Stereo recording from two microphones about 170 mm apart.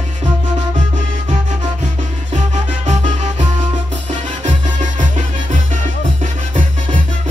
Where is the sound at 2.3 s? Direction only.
45° right (ahead or behind).